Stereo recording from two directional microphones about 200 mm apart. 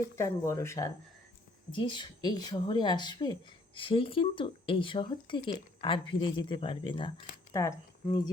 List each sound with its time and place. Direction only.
0.2 s a woman's voice: 15° left (ahead or behind)